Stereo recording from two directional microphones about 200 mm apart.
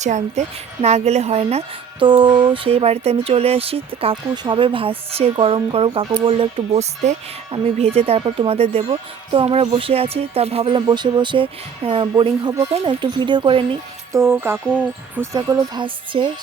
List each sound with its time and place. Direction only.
0.0 s a woman's voice: 35° right (ahead or behind)
14.1 s speech: 10° right (ahead or behind)